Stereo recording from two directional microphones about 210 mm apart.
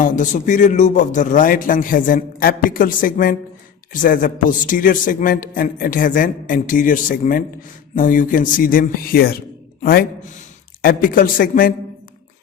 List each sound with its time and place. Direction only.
0.0 s a man's voice: 35° left (ahead or behind)